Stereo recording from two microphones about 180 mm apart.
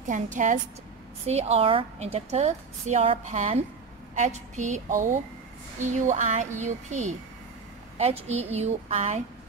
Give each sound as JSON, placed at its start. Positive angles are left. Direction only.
{"t": 0.0, "sound": "a woman's voice", "side_deg": -45}